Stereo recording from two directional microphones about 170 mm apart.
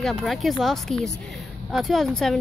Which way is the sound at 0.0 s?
Centre (ahead or behind).